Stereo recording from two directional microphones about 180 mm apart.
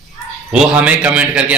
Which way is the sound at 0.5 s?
5° right (ahead or behind).